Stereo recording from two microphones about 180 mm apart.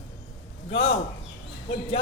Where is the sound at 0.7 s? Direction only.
30° left (ahead or behind).